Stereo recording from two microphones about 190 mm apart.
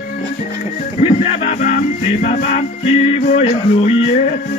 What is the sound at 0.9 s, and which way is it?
Music, 35° left (ahead or behind).